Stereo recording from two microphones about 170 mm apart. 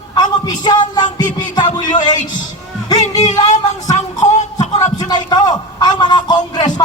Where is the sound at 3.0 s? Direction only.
45° left (ahead or behind).